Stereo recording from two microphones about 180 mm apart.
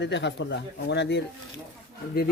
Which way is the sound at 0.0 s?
80° left.